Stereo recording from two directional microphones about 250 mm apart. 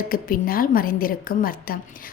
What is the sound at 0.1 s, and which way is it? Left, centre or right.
A woman's voice, left.